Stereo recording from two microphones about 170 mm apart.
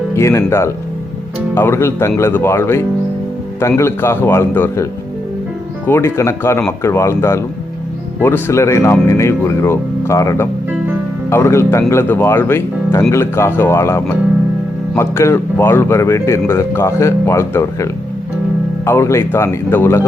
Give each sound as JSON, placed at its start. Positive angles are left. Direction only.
{"t": 0.2, "sound": "speech", "side_deg": 15}
{"t": 5.9, "sound": "speech", "side_deg": 15}
{"t": 18.9, "sound": "speech", "side_deg": 15}